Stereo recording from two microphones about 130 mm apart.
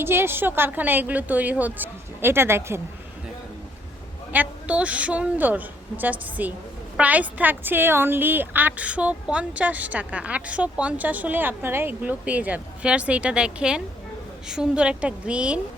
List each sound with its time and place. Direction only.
0.0 s speech: 20° right (ahead or behind)
4.3 s speech: 10° right (ahead or behind)